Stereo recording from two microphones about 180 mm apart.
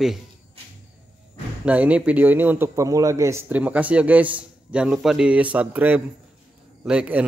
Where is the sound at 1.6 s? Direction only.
10° right (ahead or behind).